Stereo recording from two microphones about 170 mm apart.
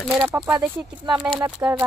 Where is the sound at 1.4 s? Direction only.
20° right (ahead or behind).